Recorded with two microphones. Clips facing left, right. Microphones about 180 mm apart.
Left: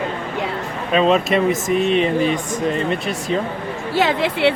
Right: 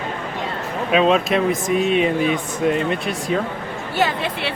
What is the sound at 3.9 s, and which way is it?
Speech, 90° left.